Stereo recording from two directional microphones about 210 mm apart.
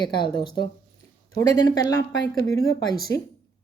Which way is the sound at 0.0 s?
20° left (ahead or behind).